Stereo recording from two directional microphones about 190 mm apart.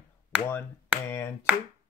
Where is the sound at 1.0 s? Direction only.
15° left (ahead or behind).